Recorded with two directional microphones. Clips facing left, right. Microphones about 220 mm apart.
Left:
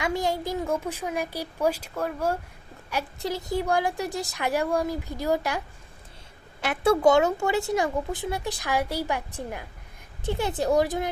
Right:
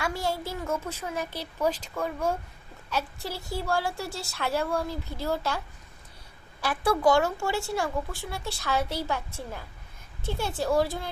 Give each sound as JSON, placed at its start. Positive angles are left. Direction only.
{"t": 0.0, "sound": "a woman's voice", "side_deg": 20}
{"t": 2.9, "sound": "a woman's voice", "side_deg": 20}